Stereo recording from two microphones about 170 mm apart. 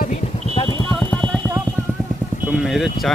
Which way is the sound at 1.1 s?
5° left (ahead or behind).